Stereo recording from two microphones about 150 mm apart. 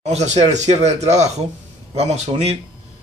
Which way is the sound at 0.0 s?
50° right (ahead or behind).